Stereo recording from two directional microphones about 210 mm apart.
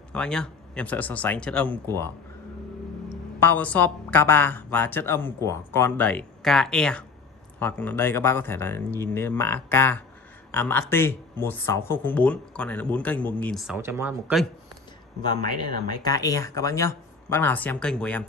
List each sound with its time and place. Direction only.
0.1 s a woman's voice: 5° left (ahead or behind)
3.3 s a woman's voice: 10° left (ahead or behind)
13.7 s speech: 10° right (ahead or behind)
15.4 s speech: 45° right (ahead or behind)
16.0 s a woman's voice: 15° left (ahead or behind)